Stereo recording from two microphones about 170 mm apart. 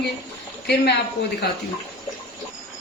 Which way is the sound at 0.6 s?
70° left (ahead or behind).